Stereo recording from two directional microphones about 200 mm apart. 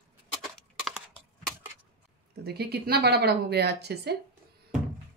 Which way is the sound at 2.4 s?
55° right (ahead or behind).